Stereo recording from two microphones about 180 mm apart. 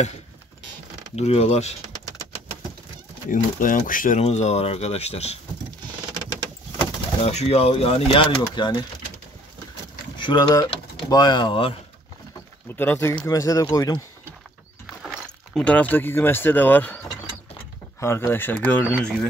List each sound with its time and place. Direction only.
1.1 s speech: 35° left (ahead or behind)
3.3 s speech: 50° left (ahead or behind)
7.2 s speech: 35° left (ahead or behind)
10.1 s speech: 25° left (ahead or behind)
12.7 s speech: 10° left (ahead or behind)
15.0 s speech: 5° left (ahead or behind)
18.0 s speech: 15° left (ahead or behind)